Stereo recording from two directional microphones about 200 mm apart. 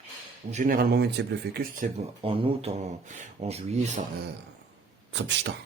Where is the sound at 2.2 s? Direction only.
30° right (ahead or behind).